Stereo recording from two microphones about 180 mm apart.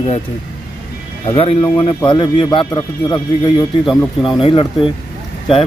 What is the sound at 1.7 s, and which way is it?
Speech, 25° left (ahead or behind).